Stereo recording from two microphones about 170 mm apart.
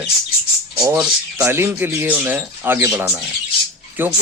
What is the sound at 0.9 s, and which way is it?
Speech, 10° right (ahead or behind).